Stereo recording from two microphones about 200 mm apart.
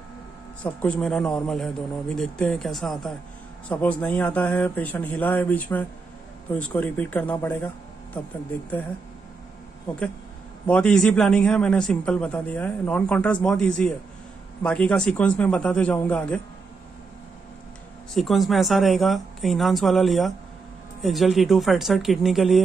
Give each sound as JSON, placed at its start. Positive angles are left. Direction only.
{"t": 0.7, "sound": "a man's voice", "side_deg": 5}
{"t": 10.7, "sound": "a man's voice", "side_deg": 5}
{"t": 18.1, "sound": "a man's voice", "side_deg": 0}